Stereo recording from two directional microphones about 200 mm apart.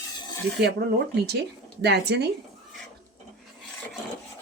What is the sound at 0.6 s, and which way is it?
Speech, 55° right (ahead or behind).